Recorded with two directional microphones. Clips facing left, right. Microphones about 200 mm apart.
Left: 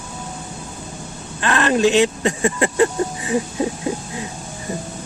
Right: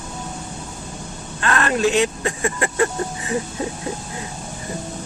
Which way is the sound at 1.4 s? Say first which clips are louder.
Left 3 dB; 20° left (ahead or behind).